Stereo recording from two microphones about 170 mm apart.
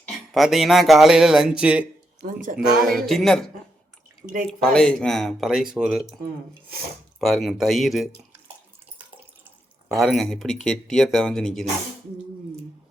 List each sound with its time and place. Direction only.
0.0 s speech: centre (ahead or behind)
2.2 s speech: 55° right (ahead or behind)
2.8 s speech: centre (ahead or behind)
7.2 s speech: centre (ahead or behind)
9.9 s speech: centre (ahead or behind)